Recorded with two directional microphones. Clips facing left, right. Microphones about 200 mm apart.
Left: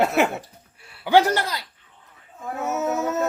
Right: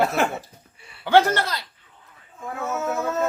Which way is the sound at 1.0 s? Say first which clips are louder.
Even; 15° left (ahead or behind).